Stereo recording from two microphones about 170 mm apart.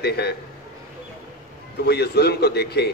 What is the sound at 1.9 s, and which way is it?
A man's voice, 70° left (ahead or behind).